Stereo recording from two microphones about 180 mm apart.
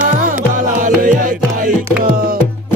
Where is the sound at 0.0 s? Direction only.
45° right (ahead or behind).